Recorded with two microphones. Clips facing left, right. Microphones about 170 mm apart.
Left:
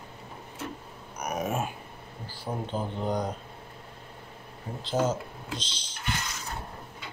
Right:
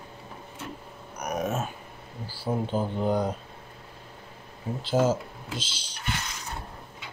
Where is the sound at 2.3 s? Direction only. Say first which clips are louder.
Right 5 dB; 10° right (ahead or behind).